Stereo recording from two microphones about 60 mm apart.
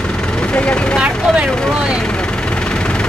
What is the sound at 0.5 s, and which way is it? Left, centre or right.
Vehicle, centre.